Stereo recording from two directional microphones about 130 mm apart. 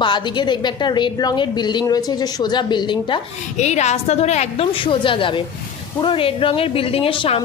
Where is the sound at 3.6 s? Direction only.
60° left (ahead or behind).